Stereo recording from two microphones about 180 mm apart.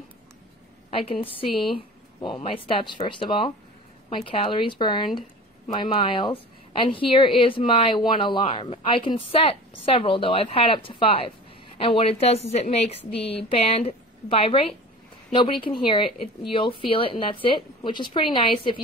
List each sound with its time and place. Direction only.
0.8 s a woman's voice: 30° left (ahead or behind)